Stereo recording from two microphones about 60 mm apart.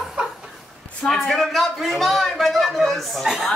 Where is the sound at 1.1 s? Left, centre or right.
Centre.